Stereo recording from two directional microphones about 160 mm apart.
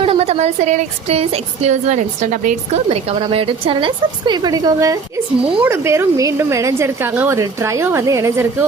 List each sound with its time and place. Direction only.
0.0 s a woman's voice: 40° right (ahead or behind); by 8.4 s 20° right (ahead or behind)